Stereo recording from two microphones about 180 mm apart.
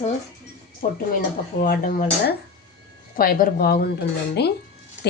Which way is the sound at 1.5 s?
55° left (ahead or behind).